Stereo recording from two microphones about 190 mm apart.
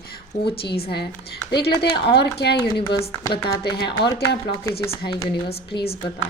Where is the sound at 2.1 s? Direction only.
60° left (ahead or behind).